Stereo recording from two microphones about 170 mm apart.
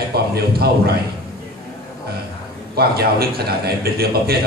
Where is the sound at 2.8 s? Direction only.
65° right (ahead or behind).